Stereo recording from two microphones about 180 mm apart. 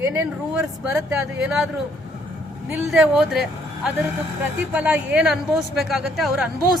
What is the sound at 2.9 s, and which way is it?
Speech, centre (ahead or behind).